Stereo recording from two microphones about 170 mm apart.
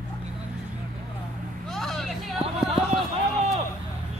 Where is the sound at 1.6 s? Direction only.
Centre (ahead or behind).